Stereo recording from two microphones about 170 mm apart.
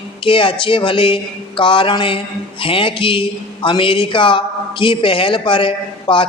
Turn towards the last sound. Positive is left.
turn(degrees=30)  # may be behind; listen again after turning